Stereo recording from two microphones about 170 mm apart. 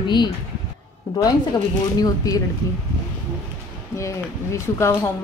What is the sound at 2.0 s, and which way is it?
Speech, 20° left (ahead or behind).